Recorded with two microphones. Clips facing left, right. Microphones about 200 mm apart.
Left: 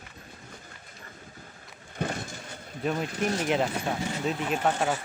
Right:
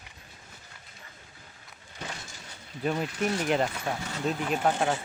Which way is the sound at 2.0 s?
55° left (ahead or behind).